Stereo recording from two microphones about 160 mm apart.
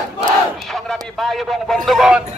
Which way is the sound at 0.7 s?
Centre (ahead or behind).